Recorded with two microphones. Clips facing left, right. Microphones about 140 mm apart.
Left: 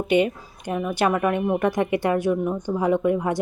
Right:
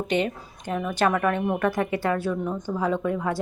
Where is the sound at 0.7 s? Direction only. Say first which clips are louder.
Left 1 dB; 10° left (ahead or behind).